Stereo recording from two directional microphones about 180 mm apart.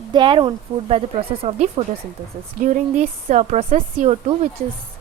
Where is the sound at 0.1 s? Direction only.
25° right (ahead or behind).